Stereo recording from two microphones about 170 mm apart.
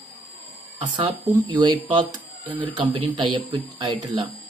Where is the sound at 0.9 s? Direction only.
30° right (ahead or behind).